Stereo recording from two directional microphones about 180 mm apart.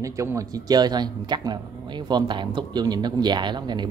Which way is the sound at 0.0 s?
15° right (ahead or behind).